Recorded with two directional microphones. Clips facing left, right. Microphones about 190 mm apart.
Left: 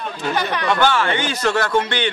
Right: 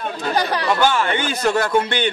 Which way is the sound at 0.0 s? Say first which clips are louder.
Right 1 dB; 35° right (ahead or behind).